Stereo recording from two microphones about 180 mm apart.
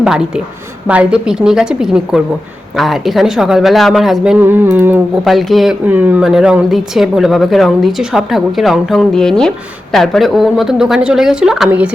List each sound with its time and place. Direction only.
0.0 s speech: 5° right (ahead or behind)
5.2 s speech: centre (ahead or behind)